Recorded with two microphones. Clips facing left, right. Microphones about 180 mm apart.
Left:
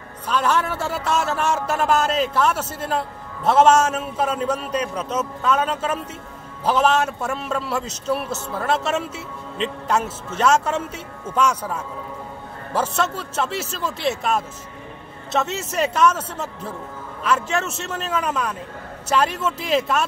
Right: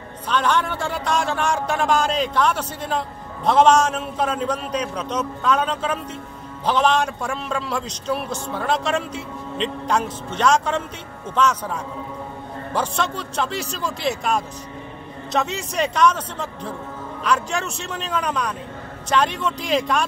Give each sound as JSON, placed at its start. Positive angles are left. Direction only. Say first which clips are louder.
{"t": 0.3, "sound": "a man's voice", "louder": "even", "side_deg": 5}